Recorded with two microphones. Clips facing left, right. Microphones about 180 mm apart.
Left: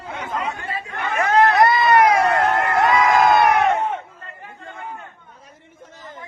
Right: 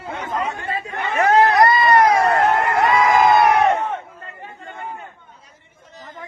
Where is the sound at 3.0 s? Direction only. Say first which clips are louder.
Right 2 dB; 5° right (ahead or behind).